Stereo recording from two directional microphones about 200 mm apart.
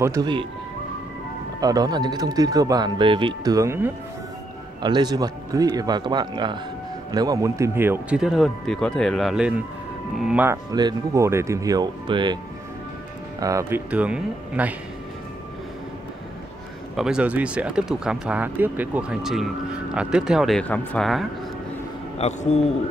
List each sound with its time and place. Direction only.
0.0 s speech: 15° right (ahead or behind)
1.6 s speech: 20° right (ahead or behind)
13.4 s speech: 15° right (ahead or behind)
16.9 s speech: 5° right (ahead or behind)
22.2 s speech: 35° left (ahead or behind)